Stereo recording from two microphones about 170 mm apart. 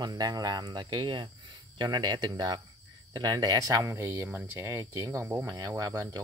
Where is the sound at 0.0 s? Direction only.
25° right (ahead or behind).